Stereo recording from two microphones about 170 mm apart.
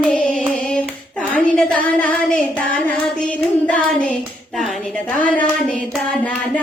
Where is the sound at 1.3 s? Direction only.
10° left (ahead or behind).